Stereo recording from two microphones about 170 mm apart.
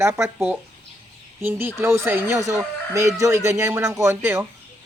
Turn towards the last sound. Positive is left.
turn(degrees=-15)  # may be behind; listen again after turning